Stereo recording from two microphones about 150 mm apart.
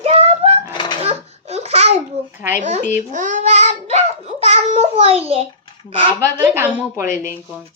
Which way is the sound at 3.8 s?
45° right (ahead or behind).